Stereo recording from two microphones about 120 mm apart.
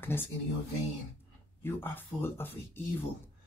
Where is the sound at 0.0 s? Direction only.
20° left (ahead or behind).